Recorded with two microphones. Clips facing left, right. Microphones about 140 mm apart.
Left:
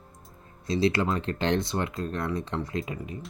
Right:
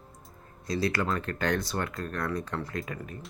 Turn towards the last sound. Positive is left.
turn(degrees=20)  # may be behind; listen again after turning